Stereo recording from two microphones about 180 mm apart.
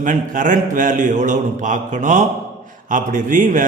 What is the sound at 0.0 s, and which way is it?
Speech, 45° right (ahead or behind).